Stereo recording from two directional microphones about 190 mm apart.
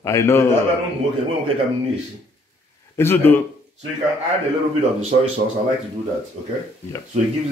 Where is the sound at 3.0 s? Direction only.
10° left (ahead or behind).